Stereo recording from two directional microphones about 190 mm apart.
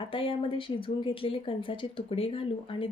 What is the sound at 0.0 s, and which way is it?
Speech, 30° left (ahead or behind).